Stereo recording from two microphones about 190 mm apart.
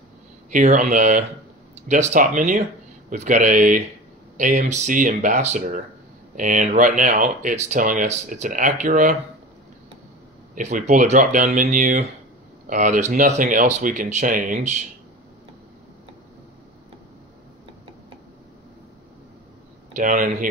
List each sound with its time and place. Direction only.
0.5 s speech: 40° right (ahead or behind)
10.5 s speech: 40° right (ahead or behind)
20.0 s speech: 45° right (ahead or behind)